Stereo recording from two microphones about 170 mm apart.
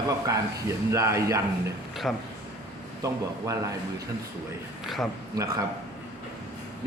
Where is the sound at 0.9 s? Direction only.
15° right (ahead or behind).